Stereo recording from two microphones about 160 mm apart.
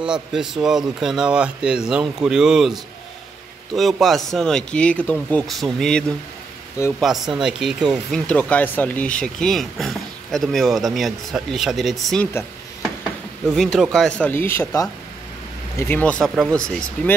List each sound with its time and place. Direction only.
0.0 s speech: 5° right (ahead or behind)
13.6 s speech: centre (ahead or behind)